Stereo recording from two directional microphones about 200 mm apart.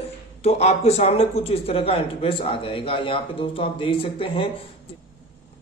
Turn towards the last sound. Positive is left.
turn(degrees=25)  # may be behind; listen again after turning